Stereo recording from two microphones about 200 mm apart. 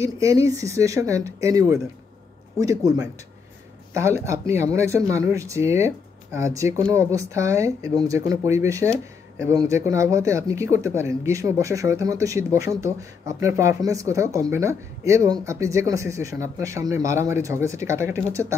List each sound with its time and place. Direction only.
0.0 s speech: 15° right (ahead or behind)